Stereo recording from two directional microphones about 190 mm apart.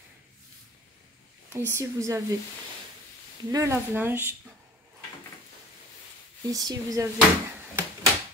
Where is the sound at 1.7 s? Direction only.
15° right (ahead or behind).